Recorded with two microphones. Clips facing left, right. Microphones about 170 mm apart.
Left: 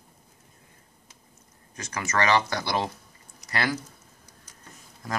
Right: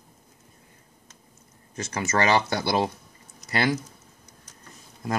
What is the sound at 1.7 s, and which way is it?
Speech, 25° right (ahead or behind).